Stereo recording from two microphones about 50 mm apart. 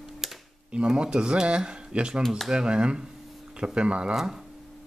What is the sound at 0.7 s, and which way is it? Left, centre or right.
Speech, centre.